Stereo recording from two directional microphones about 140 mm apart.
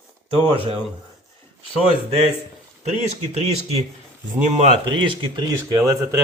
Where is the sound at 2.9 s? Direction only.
50° right (ahead or behind).